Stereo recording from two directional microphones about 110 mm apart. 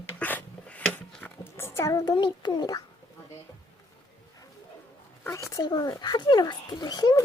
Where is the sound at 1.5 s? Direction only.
25° left (ahead or behind).